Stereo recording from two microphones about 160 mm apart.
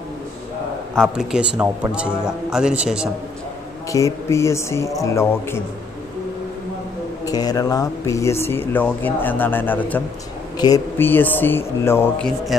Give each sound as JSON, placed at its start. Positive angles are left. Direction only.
{"t": 0.9, "sound": "speech", "side_deg": 0}
{"t": 3.9, "sound": "speech", "side_deg": 20}
{"t": 7.2, "sound": "speech", "side_deg": 25}
{"t": 10.6, "sound": "speech", "side_deg": 25}
{"t": 11.0, "sound": "speech", "side_deg": 10}